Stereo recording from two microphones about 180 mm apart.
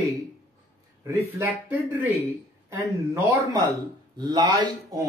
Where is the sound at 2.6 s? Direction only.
15° right (ahead or behind).